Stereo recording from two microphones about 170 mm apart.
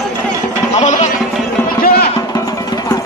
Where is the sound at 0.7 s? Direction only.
45° left (ahead or behind).